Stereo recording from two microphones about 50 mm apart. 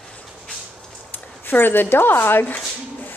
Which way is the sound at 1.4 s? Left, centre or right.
Left.